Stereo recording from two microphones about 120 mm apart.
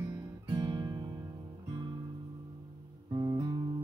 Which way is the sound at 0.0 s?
30° right (ahead or behind).